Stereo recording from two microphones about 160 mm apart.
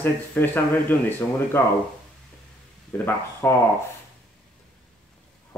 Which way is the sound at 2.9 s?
15° left (ahead or behind).